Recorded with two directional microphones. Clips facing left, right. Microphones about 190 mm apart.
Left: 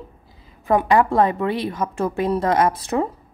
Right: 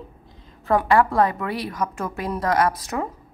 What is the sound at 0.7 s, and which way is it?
A woman's voice, 20° left (ahead or behind).